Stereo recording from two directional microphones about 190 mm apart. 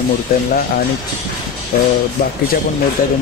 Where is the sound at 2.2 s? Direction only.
50° left (ahead or behind).